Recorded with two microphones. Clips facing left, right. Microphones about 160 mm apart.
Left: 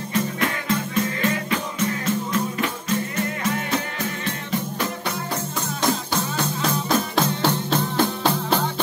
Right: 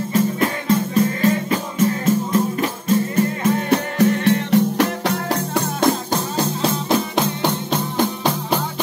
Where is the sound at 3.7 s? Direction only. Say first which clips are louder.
Right 10 dB; 70° right (ahead or behind).